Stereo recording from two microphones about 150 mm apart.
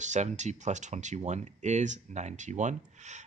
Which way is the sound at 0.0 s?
50° right (ahead or behind).